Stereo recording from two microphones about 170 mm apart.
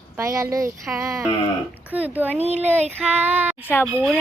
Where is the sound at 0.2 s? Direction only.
20° right (ahead or behind).